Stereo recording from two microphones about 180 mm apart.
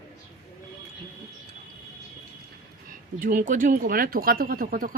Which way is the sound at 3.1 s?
50° right (ahead or behind).